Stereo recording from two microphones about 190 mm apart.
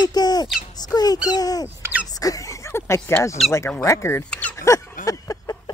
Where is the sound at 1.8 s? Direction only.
10° right (ahead or behind).